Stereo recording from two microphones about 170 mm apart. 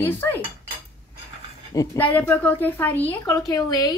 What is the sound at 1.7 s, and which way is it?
A woman's voice, 15° left (ahead or behind).